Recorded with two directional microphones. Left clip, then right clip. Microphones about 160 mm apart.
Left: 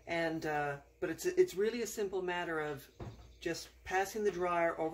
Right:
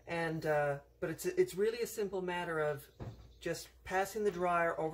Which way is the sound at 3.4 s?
25° left (ahead or behind).